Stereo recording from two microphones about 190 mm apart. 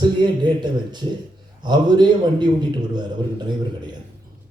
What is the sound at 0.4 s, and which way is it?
A man's voice, 25° right (ahead or behind).